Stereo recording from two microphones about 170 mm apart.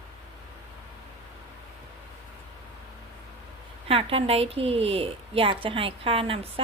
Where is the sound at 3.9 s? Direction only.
35° right (ahead or behind).